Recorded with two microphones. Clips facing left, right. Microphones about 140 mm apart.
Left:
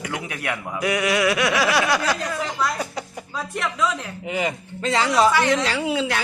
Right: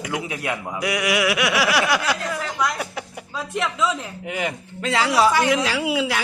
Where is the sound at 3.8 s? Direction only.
Centre (ahead or behind).